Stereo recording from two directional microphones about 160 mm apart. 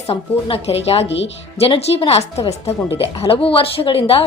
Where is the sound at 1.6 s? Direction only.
35° left (ahead or behind).